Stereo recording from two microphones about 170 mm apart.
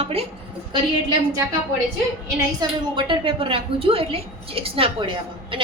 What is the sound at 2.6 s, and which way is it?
A woman's voice, 30° right (ahead or behind).